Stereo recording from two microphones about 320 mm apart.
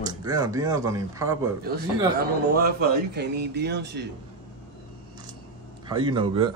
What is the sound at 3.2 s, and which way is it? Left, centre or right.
Speech, right.